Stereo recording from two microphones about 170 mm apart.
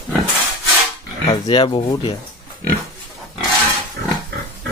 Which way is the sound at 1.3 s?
30° left (ahead or behind).